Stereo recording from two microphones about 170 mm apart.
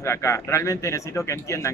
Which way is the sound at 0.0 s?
15° left (ahead or behind).